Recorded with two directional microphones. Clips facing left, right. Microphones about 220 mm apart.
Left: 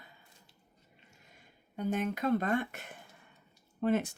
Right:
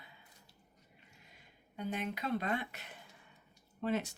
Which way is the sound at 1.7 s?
45° left (ahead or behind).